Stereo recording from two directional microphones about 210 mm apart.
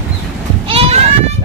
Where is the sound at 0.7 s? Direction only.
25° right (ahead or behind).